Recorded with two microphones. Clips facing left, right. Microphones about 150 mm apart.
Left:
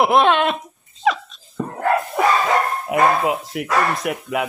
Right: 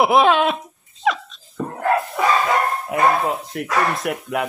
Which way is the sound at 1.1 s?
Centre (ahead or behind).